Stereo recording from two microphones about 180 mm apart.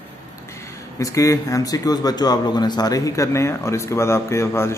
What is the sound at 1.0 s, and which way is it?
Speech, 20° left (ahead or behind).